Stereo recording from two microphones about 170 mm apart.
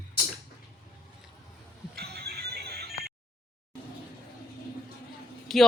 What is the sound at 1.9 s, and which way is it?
Music, 70° right (ahead or behind).